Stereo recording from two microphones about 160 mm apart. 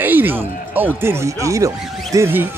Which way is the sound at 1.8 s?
Centre (ahead or behind).